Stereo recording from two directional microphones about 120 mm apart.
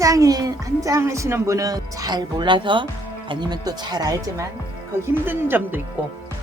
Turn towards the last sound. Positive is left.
turn(degrees=-15)  # may be behind; listen again after turning